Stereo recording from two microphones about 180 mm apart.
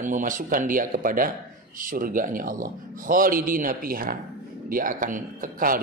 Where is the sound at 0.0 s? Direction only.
45° right (ahead or behind).